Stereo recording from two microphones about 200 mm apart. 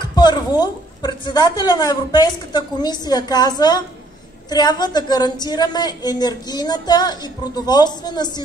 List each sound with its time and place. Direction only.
0.0 s a woman's voice: 20° left (ahead or behind)